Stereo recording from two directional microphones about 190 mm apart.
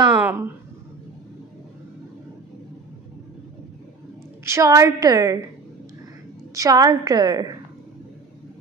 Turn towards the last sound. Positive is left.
turn(degrees=-20)  # may be behind; listen again after turning